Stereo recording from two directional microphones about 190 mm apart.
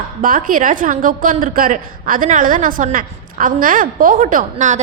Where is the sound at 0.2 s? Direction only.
45° right (ahead or behind).